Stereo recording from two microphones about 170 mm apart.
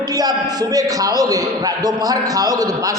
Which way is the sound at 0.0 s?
20° right (ahead or behind).